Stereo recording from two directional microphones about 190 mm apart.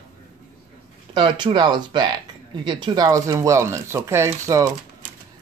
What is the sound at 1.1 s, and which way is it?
Speech, 25° right (ahead or behind).